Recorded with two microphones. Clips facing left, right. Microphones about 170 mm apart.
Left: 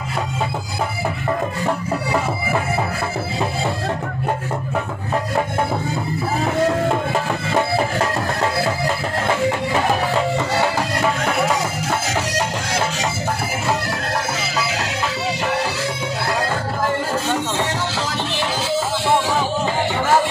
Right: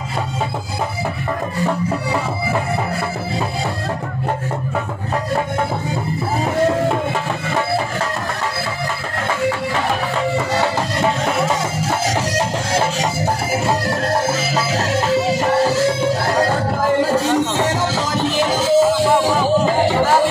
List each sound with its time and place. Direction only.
15.0 s music: 45° right (ahead or behind)
18.2 s music: 40° right (ahead or behind)